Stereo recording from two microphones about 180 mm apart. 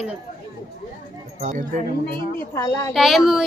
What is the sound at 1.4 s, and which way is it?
Speech, 45° right (ahead or behind).